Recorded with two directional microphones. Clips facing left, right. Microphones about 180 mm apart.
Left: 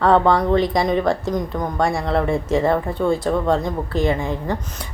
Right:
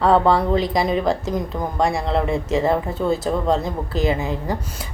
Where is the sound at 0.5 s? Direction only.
Centre (ahead or behind).